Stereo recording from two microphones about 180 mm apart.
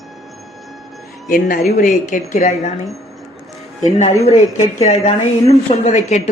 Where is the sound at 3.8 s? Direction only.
40° left (ahead or behind).